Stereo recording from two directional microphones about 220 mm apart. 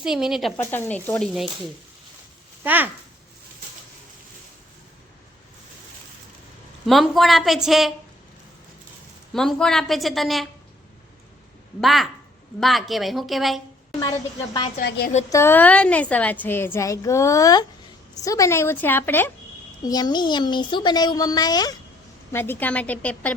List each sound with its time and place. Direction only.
0.0 s a woman's voice: centre (ahead or behind)
0.5 s a woman's voice: 10° left (ahead or behind)
2.6 s speech: 10° right (ahead or behind)
6.8 s a woman's voice: centre (ahead or behind)
9.3 s a woman's voice: centre (ahead or behind)
11.8 s a woman's voice: centre (ahead or behind)
14.0 s speech: 20° left (ahead or behind)
14.8 s a woman's voice: 45° left (ahead or behind)
15.3 s a woman's voice: 10° left (ahead or behind)